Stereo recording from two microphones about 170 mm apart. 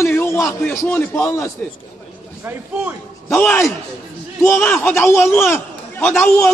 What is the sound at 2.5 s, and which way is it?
Speech, 10° right (ahead or behind).